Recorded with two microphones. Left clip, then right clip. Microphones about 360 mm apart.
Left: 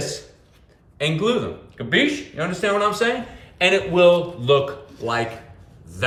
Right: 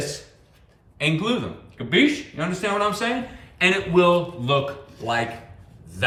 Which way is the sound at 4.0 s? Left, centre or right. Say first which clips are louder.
Left 3 dB; centre.